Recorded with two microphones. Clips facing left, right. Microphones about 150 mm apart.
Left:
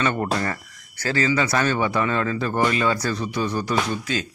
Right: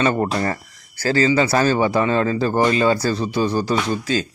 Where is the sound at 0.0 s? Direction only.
30° right (ahead or behind).